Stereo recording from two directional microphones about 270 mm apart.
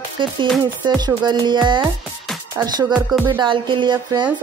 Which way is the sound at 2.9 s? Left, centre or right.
Centre.